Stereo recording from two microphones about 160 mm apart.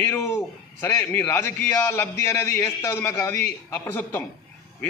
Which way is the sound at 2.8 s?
15° left (ahead or behind).